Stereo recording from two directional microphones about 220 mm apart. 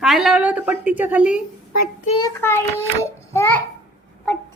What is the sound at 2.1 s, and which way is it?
A child's voice, 15° left (ahead or behind).